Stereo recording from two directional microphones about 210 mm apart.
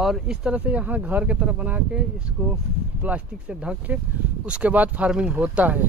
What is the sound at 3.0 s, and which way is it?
Speech, 5° right (ahead or behind).